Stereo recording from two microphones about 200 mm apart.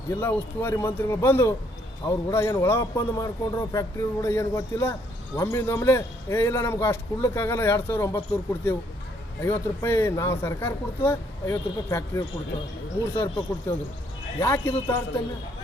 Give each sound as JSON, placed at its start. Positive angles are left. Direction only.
{"t": 0.1, "sound": "a man's voice", "side_deg": 10}
{"t": 9.4, "sound": "a man's voice", "side_deg": 15}